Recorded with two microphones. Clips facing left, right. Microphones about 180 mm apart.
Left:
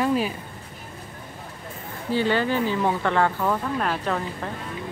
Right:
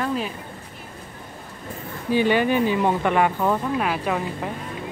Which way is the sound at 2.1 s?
15° right (ahead or behind).